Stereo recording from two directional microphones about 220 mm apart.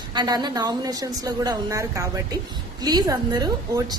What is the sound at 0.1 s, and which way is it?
A woman's voice, 20° right (ahead or behind).